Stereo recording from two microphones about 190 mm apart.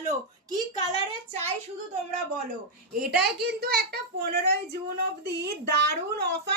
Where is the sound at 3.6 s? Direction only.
55° right (ahead or behind).